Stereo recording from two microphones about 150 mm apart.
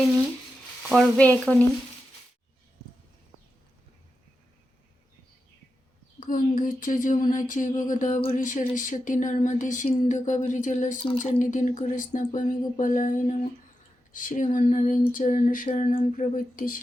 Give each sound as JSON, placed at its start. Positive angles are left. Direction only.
{"t": 0.9, "sound": "frying", "side_deg": 0}
{"t": 6.1, "sound": "speech", "side_deg": 65}